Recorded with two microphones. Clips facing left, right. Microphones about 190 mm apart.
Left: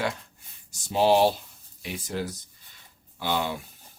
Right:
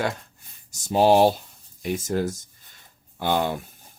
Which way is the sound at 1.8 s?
45° right (ahead or behind).